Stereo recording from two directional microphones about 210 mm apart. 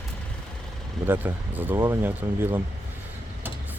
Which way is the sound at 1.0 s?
10° right (ahead or behind).